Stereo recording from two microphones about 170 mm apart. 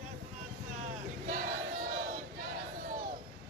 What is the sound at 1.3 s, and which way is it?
Battle cry, 50° right (ahead or behind).